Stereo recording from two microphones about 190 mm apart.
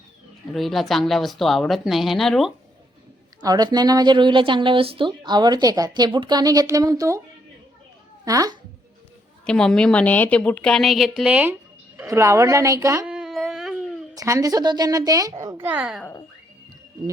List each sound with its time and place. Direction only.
0.5 s a woman's voice: centre (ahead or behind)
3.4 s speech: 20° right (ahead or behind)
8.2 s speech: 20° right (ahead or behind)
9.5 s a woman's voice: 5° left (ahead or behind); by 13.1 s 15° right (ahead or behind)
13.1 s a sound: 5° right (ahead or behind)
14.2 s speech: 15° right (ahead or behind)